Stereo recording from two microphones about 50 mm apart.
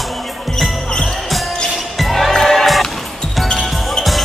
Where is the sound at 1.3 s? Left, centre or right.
Centre.